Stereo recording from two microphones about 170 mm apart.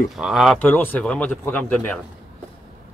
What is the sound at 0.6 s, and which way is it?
A man's voice, 10° left (ahead or behind).